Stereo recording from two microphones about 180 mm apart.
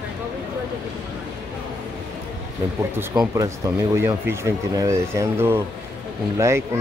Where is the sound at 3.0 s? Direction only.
20° right (ahead or behind).